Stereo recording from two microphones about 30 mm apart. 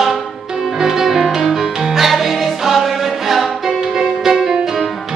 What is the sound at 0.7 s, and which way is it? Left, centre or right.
Music, centre.